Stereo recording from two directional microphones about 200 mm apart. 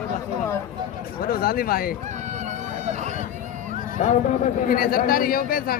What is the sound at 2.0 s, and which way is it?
Run, 35° right (ahead or behind).